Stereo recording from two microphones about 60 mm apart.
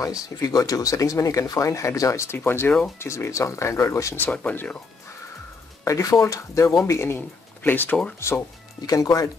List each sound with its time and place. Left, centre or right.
0.0 s speech: left
2.2 s speech: left
3.0 s speech: left
4.3 s speech: left
5.9 s speech: left
6.8 s speech: left
7.2 s speech: left
8.8 s speech: left